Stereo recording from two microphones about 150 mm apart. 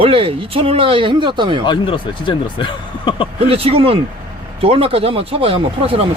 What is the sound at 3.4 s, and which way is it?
Speech, 40° right (ahead or behind).